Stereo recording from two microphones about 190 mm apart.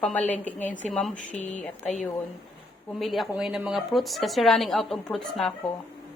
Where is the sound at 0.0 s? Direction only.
10° left (ahead or behind).